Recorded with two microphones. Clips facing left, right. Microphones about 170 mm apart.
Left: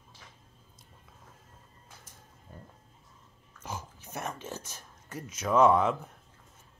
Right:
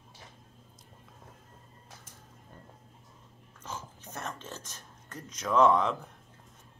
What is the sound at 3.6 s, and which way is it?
Speech, 10° left (ahead or behind).